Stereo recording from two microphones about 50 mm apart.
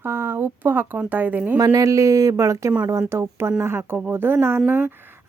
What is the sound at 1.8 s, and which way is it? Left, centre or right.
Speech, right.